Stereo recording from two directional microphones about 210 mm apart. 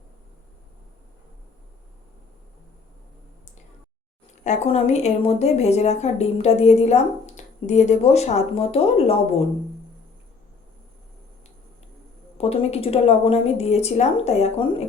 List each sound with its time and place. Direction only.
4.4 s a woman's voice: 30° left (ahead or behind)
12.4 s a woman's voice: 30° left (ahead or behind)